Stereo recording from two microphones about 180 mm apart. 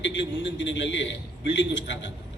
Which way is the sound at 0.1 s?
90° left.